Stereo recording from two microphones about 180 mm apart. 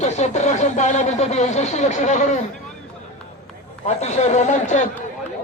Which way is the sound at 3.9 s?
40° left (ahead or behind).